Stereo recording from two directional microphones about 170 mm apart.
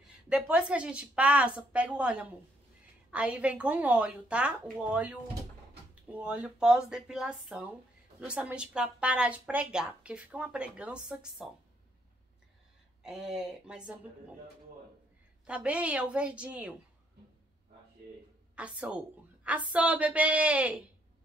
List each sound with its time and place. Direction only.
0.3 s speech: 5° right (ahead or behind)
13.0 s speech: 5° right (ahead or behind)
15.4 s speech: 10° right (ahead or behind)
18.6 s speech: 5° right (ahead or behind)